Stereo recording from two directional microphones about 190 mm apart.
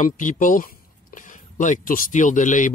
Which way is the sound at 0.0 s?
45° left (ahead or behind).